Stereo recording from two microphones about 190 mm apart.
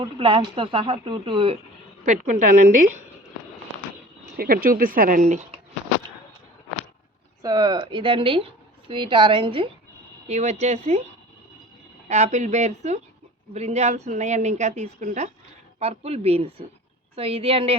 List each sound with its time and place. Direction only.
0.0 s speech: 30° right (ahead or behind)
2.0 s a woman's voice: 40° right (ahead or behind)
4.4 s speech: 50° right (ahead or behind)
7.4 s a woman's voice: 20° right (ahead or behind)
12.0 s a woman's voice: 35° right (ahead or behind)